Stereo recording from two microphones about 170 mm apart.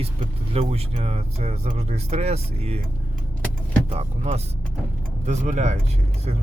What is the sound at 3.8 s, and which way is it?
Speech, 40° right (ahead or behind).